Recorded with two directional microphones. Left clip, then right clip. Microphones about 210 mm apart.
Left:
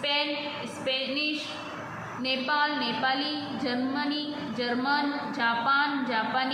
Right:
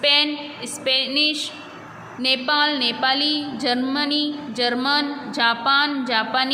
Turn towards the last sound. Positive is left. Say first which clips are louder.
# right 7 dB
turn(degrees=-55)  # may be behind; listen again after turning